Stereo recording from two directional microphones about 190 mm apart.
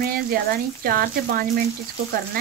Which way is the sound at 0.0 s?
50° right (ahead or behind).